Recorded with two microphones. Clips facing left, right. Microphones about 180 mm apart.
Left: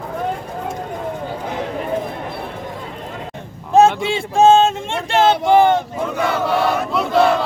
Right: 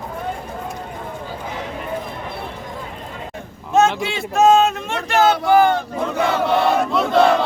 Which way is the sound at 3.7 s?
30° left (ahead or behind).